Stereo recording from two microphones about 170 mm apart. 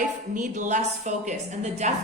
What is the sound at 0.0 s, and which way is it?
A woman's voice, 45° right (ahead or behind).